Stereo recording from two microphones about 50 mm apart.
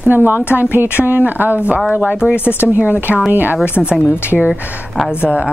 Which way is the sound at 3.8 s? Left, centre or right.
Centre.